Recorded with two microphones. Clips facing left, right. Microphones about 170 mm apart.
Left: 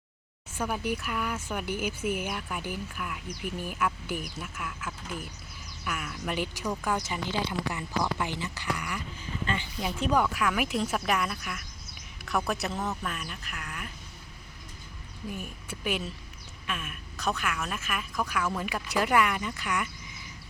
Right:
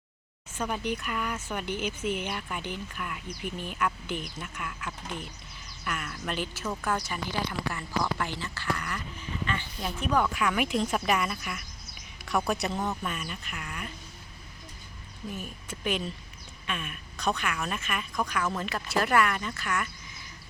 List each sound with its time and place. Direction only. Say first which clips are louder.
0.5 s speech: even; 10° left (ahead or behind)
10.3 s speech: right 1 dB; centre (ahead or behind)
15.3 s speech: even; 10° left (ahead or behind)